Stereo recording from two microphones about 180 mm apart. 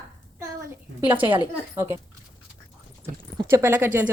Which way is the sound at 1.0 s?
25° right (ahead or behind).